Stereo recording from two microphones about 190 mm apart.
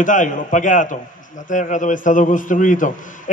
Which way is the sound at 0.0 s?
45° left (ahead or behind).